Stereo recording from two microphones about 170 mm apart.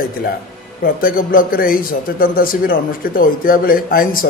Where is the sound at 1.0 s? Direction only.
55° left (ahead or behind).